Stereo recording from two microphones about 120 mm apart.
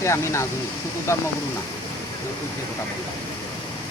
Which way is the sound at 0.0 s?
25° left (ahead or behind).